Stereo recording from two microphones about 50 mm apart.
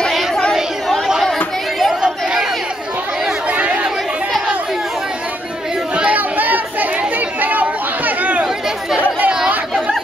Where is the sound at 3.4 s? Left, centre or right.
Right.